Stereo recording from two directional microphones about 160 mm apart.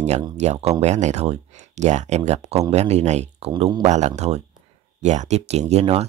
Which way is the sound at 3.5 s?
30° right (ahead or behind).